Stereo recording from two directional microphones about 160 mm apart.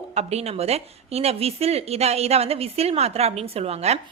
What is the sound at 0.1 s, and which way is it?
A woman's voice, 40° right (ahead or behind).